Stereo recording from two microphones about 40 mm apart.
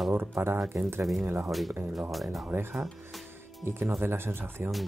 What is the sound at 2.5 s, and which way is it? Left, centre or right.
Speech, right.